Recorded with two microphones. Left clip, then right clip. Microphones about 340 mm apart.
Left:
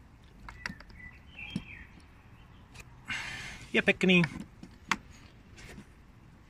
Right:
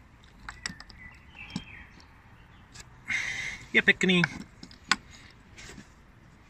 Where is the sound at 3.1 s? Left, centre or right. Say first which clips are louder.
Right 7 dB; centre.